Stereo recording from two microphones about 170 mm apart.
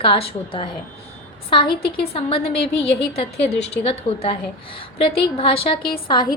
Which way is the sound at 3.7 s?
35° left (ahead or behind).